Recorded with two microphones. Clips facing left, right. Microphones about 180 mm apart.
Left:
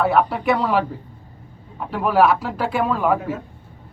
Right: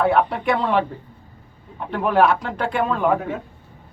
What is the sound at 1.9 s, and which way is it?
Speech, 5° left (ahead or behind).